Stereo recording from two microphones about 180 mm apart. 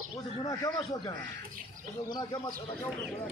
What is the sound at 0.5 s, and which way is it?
Speech, 20° left (ahead or behind).